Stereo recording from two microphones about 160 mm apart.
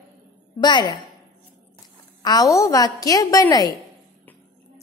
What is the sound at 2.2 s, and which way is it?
A woman's voice, 25° left (ahead or behind).